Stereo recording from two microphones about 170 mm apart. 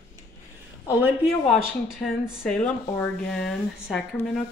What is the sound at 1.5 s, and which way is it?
Speech, 5° left (ahead or behind).